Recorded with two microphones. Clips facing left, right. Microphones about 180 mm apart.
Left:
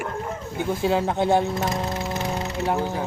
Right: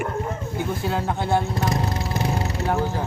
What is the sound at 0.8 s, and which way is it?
Speech, 20° left (ahead or behind).